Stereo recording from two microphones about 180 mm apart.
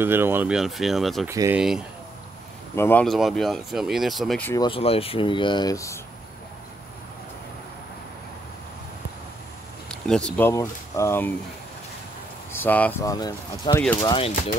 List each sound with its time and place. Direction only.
0.0 s speech: 10° right (ahead or behind)
1.2 s speech: 15° right (ahead or behind)
2.7 s speech: 10° left (ahead or behind)
4.6 s speech: 30° left (ahead or behind)
9.8 s speech: 5° left (ahead or behind)
12.5 s speech: 10° left (ahead or behind)
13.0 s speech: 20° left (ahead or behind)